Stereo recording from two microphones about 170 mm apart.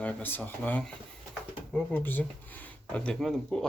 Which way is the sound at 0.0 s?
10° left (ahead or behind).